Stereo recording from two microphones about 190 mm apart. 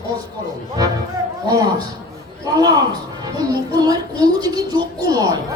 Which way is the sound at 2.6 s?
20° right (ahead or behind).